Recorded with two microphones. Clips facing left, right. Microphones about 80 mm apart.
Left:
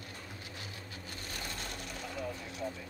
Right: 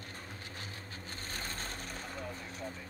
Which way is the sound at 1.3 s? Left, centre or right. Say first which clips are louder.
Even; right.